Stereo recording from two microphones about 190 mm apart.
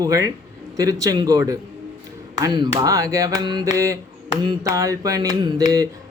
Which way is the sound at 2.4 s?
25° right (ahead or behind).